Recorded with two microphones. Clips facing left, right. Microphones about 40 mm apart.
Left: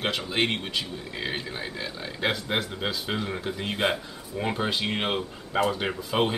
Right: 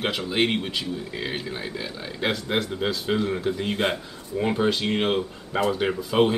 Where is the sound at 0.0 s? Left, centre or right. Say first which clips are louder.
Right 3 dB; centre.